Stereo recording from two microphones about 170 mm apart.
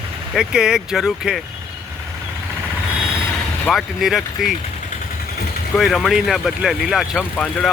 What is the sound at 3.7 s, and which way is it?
Speech, centre (ahead or behind).